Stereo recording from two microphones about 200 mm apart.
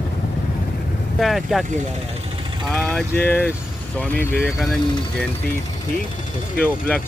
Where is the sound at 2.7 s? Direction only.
10° left (ahead or behind).